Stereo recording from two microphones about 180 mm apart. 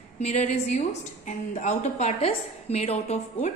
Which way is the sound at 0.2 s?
40° left (ahead or behind).